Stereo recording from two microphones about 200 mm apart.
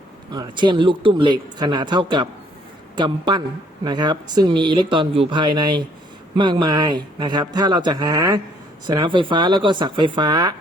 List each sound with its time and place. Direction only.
0.3 s speech: 20° right (ahead or behind)